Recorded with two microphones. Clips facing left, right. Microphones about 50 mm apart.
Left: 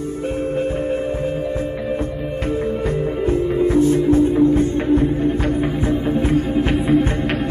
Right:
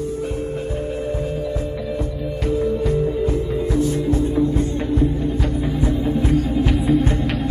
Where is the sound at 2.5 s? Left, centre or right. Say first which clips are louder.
Right 2 dB; left.